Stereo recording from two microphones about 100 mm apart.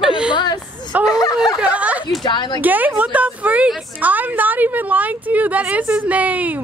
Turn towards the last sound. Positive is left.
turn(degrees=-15)  # may be behind; listen again after turning